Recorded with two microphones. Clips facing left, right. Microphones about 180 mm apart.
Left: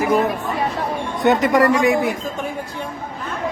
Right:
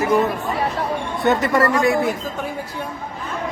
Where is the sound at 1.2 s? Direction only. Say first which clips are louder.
Left 3 dB; 15° left (ahead or behind).